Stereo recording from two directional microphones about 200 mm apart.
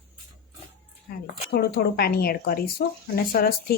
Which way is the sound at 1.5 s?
50° left (ahead or behind).